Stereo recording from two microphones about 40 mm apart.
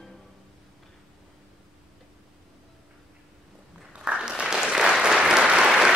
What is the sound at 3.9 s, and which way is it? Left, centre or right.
Applause, right.